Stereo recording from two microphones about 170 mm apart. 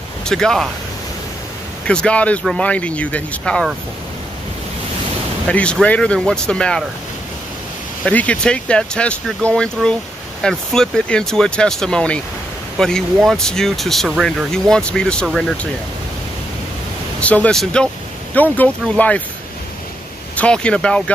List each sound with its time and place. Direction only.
0.2 s speech: 5° left (ahead or behind)
1.9 s speech: 5° left (ahead or behind)
5.5 s speech: 5° left (ahead or behind)
8.0 s speech: 10° left (ahead or behind)
17.2 s speech: 5° left (ahead or behind)
20.3 s speech: 5° left (ahead or behind)